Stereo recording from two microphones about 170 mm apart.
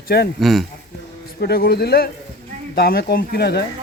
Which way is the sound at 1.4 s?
65° left (ahead or behind).